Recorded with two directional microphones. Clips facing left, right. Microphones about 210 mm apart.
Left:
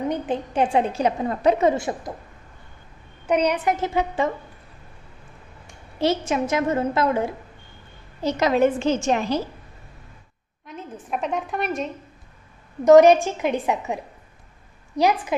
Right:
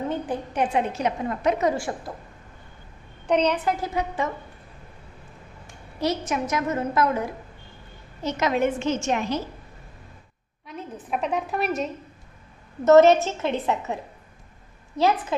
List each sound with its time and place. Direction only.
0.1 s a woman's voice: 25° left (ahead or behind)
3.3 s a woman's voice: 10° left (ahead or behind)
3.8 s a woman's voice: 25° left (ahead or behind)
5.9 s a woman's voice: 25° left (ahead or behind)
11.1 s a woman's voice: centre (ahead or behind)
12.8 s a woman's voice: 15° left (ahead or behind)
15.0 s a woman's voice: 15° left (ahead or behind)